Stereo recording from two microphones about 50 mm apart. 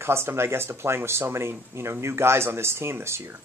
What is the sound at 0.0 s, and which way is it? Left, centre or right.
Speech, right.